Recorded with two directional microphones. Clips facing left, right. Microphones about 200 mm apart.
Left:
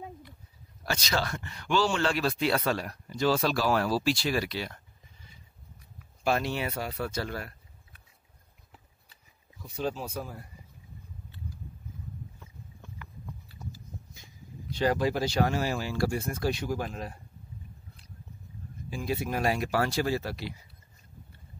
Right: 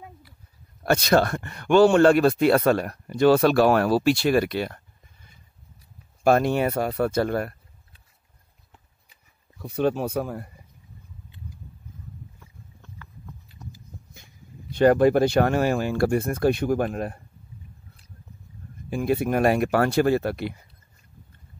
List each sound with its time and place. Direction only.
0.8 s speech: 60° right (ahead or behind)
6.2 s speech: 50° right (ahead or behind)
9.6 s speech: 65° right (ahead or behind)
14.1 s speech: 55° right (ahead or behind)
18.9 s speech: 55° right (ahead or behind)